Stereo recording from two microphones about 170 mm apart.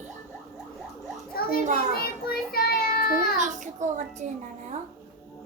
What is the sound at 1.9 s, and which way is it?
Child singing, 60° left (ahead or behind).